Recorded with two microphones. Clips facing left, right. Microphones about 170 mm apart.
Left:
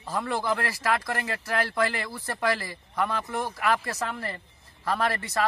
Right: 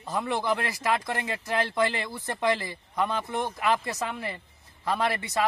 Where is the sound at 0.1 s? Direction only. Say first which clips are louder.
Even; 20° right (ahead or behind).